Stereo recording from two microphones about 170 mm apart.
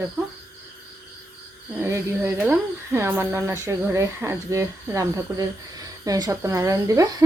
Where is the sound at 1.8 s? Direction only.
15° right (ahead or behind).